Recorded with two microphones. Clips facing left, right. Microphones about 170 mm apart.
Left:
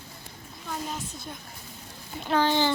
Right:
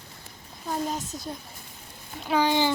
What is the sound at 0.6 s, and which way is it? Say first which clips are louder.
Speech: right 5 dB; 40° right (ahead or behind).